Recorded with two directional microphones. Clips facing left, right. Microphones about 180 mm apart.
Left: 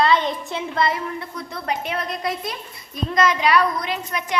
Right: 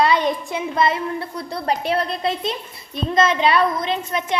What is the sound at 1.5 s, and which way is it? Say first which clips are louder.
A woman's voice: right 5 dB; 35° right (ahead or behind).